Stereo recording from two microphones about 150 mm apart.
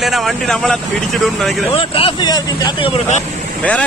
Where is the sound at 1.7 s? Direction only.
40° left (ahead or behind).